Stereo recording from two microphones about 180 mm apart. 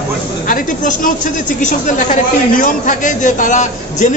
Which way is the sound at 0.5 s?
45° left (ahead or behind).